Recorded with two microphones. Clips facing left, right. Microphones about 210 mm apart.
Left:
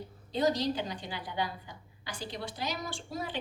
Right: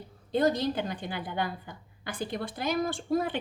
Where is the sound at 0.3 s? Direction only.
55° right (ahead or behind).